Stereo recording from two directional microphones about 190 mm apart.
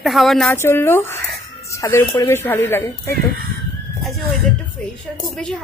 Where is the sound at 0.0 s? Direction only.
Centre (ahead or behind).